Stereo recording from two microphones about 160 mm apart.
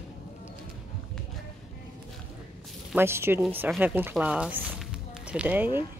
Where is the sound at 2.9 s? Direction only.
15° right (ahead or behind).